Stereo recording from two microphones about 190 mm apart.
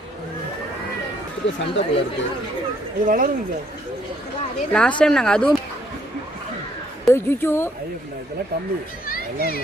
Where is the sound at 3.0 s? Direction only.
45° right (ahead or behind).